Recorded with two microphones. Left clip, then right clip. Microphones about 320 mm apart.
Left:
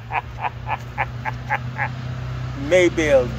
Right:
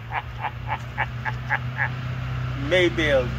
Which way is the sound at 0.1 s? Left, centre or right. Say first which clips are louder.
Left 4 dB; left.